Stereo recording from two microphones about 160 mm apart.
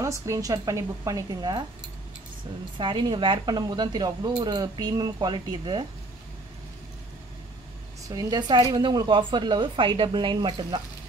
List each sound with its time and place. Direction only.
0.0 s speech: 20° right (ahead or behind)
2.8 s speech: 30° right (ahead or behind)
8.1 s speech: 25° right (ahead or behind)